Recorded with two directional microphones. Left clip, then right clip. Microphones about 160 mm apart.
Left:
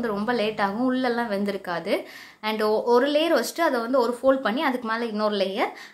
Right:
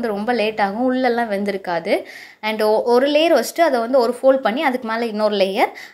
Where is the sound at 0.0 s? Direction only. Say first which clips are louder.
Right 5 dB; 15° right (ahead or behind).